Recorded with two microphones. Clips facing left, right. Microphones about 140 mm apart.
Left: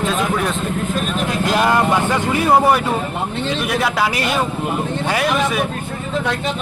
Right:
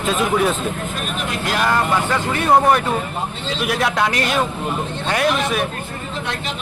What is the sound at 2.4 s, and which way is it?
Speech, 5° left (ahead or behind).